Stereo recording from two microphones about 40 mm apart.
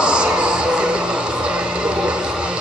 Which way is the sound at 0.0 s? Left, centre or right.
Right.